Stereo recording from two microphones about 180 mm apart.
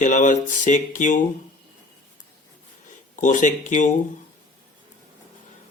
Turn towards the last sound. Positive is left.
turn(degrees=45)  # may be behind; listen again after turning